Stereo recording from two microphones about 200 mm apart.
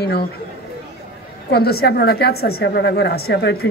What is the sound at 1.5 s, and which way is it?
A woman's voice, 50° left (ahead or behind).